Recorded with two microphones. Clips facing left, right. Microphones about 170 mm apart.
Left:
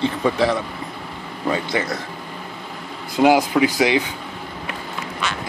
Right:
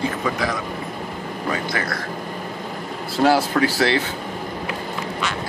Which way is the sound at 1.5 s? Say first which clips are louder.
Left 4 dB; 20° left (ahead or behind).